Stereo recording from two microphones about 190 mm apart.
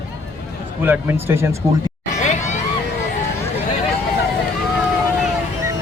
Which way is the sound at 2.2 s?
40° left (ahead or behind).